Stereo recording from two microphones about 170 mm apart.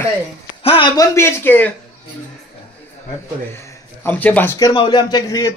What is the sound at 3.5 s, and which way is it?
Speech, 15° left (ahead or behind).